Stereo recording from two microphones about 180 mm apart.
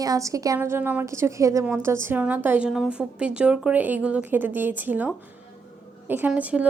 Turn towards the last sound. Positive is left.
turn(degrees=-10)  # may be behind; listen again after turning